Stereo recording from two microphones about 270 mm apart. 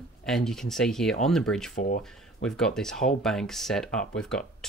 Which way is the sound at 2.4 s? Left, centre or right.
Centre.